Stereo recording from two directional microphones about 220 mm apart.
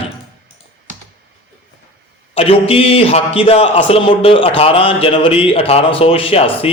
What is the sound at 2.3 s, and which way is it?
A man's voice, 25° left (ahead or behind).